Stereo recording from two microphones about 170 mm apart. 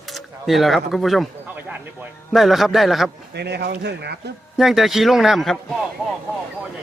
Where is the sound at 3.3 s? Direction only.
80° right.